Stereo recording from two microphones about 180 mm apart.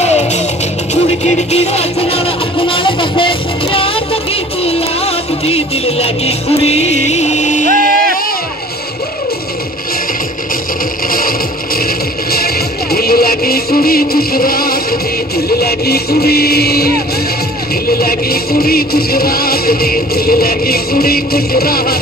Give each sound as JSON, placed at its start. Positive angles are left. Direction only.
{"t": 0.0, "sound": "music", "side_deg": 40}
{"t": 7.6, "sound": "music", "side_deg": -50}
{"t": 11.1, "sound": "a sound", "side_deg": 55}
{"t": 12.9, "sound": "music", "side_deg": 55}